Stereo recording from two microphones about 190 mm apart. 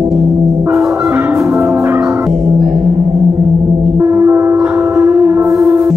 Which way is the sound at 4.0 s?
10° right (ahead or behind).